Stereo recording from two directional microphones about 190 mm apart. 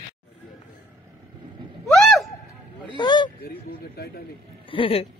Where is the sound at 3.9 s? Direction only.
55° left (ahead or behind).